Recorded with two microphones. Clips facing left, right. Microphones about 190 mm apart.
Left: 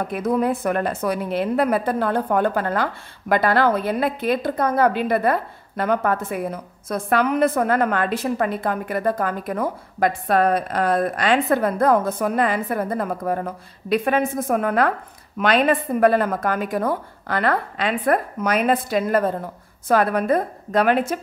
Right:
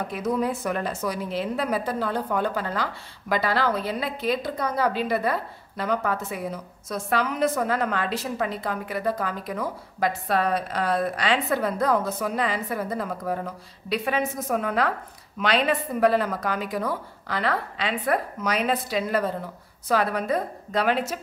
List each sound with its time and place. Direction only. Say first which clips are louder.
0.1 s a woman's voice: left 5 dB; 55° left (ahead or behind)